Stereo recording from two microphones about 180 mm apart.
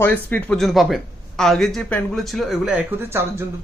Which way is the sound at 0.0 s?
10° left (ahead or behind).